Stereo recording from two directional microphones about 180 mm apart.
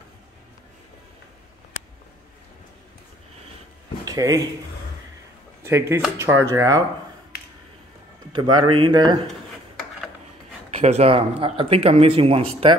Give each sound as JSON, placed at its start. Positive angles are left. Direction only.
{"t": 4.0, "sound": "speech", "side_deg": -20}
{"t": 5.6, "sound": "speech", "side_deg": -15}
{"t": 8.3, "sound": "speech", "side_deg": -25}
{"t": 10.8, "sound": "speech", "side_deg": -35}